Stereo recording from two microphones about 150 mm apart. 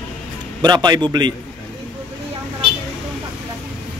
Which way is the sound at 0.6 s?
30° right (ahead or behind).